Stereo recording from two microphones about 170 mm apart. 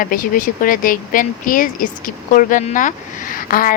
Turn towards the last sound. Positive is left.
turn(degrees=55)  # may be behind; listen again after turning